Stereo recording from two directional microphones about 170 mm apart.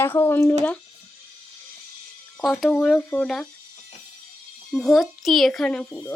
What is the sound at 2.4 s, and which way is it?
A child's voice, centre (ahead or behind).